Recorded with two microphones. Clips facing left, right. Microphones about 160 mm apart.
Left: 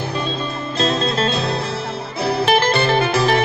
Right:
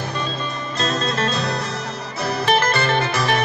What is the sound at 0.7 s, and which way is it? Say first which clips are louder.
Music: left 4 dB; 30° left (ahead or behind).